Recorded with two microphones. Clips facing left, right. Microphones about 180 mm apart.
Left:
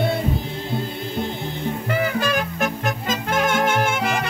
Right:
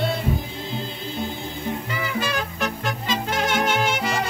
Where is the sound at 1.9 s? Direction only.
50° left (ahead or behind).